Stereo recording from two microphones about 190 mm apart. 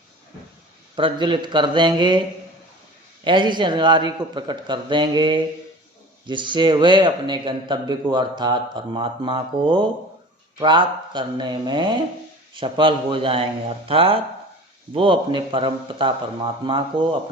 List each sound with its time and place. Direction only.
0.9 s a man's voice: 25° right (ahead or behind)
3.2 s a man's voice: 25° right (ahead or behind)